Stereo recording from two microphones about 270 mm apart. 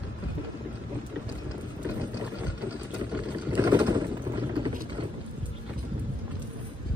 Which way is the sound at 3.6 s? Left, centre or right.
Centre.